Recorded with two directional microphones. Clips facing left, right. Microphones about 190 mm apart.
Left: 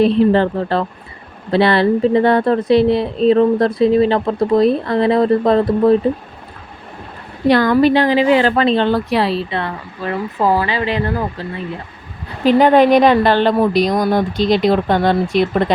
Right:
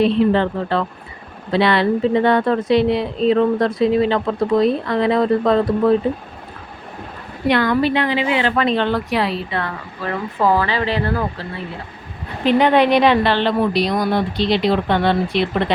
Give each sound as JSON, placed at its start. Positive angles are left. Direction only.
{"t": 0.0, "sound": "a woman's voice", "side_deg": 40}
{"t": 7.4, "sound": "a woman's voice", "side_deg": 40}
{"t": 10.4, "sound": "speech", "side_deg": 15}
{"t": 12.5, "sound": "a woman's voice", "side_deg": 45}